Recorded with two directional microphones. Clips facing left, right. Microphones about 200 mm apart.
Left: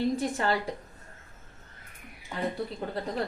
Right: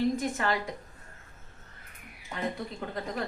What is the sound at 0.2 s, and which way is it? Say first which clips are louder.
Speech: left 2 dB; 30° left (ahead or behind).